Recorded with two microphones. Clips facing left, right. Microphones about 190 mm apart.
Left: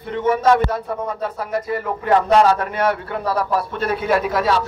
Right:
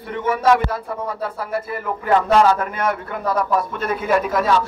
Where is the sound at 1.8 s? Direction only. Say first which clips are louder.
Even; 35° left (ahead or behind).